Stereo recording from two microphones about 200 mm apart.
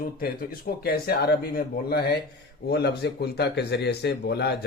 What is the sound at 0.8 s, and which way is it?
Speech, 50° left (ahead or behind).